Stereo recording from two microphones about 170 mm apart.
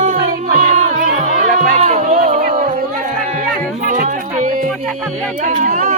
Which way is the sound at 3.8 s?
55° right (ahead or behind).